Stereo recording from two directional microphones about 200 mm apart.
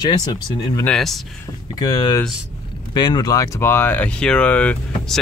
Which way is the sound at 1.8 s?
20° left (ahead or behind).